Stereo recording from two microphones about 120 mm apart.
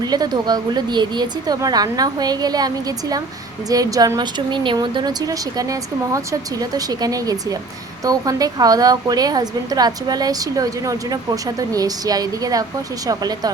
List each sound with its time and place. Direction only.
0.0 s a woman's voice: 35° right (ahead or behind)